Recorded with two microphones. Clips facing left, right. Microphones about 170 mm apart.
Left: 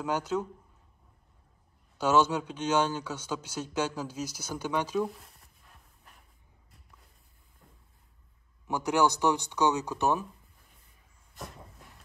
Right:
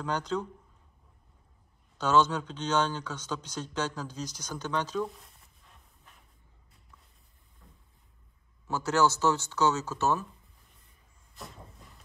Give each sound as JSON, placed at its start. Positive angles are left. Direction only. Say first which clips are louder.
{"t": 0.0, "sound": "speech", "louder": "left 1 dB", "side_deg": 10}
{"t": 2.0, "sound": "speech", "louder": "even", "side_deg": 10}
{"t": 8.6, "sound": "speech", "louder": "even", "side_deg": 15}
{"t": 11.3, "sound": "a sound", "louder": "left 2 dB", "side_deg": 0}